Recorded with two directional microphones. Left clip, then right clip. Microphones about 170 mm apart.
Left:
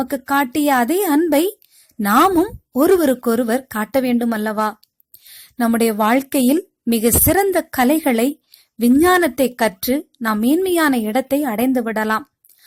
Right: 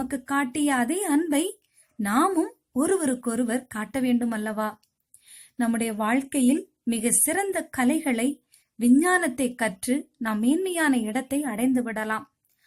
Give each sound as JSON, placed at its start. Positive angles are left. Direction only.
{"t": 0.0, "sound": "a woman's voice", "side_deg": 45}